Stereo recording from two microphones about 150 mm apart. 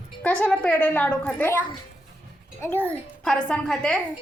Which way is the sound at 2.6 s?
10° left (ahead or behind).